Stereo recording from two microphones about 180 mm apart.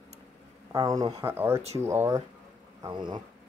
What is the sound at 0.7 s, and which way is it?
Speech, 20° right (ahead or behind).